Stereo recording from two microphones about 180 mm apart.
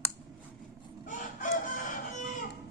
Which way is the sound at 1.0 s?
45° left (ahead or behind).